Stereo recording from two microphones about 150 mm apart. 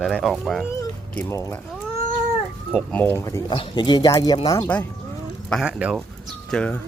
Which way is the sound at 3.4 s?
35° left (ahead or behind).